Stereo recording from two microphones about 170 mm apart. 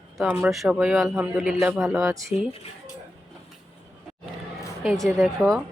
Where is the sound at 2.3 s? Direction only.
35° left (ahead or behind).